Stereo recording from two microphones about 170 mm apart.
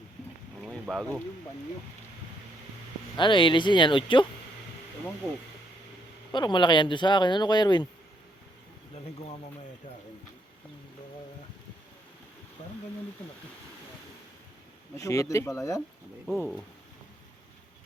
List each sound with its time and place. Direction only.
0.6 s boat: centre (ahead or behind)
3.2 s speech: 30° left (ahead or behind)
6.3 s speech: 25° left (ahead or behind)
14.9 s speech: 20° left (ahead or behind)
16.2 s speech: centre (ahead or behind)